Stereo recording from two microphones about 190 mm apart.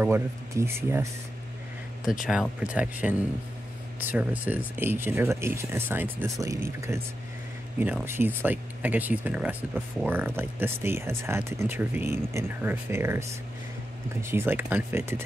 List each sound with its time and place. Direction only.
0.0 s speech: 15° right (ahead or behind)
2.1 s speech: centre (ahead or behind)
14.2 s speech: 10° right (ahead or behind)